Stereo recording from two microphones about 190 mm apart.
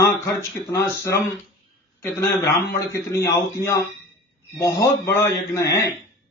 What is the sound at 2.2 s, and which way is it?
A man's voice, 15° left (ahead or behind).